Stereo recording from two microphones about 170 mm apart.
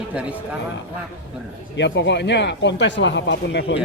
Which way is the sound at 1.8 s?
90° left.